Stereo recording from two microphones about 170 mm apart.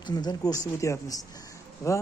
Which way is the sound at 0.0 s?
25° left (ahead or behind).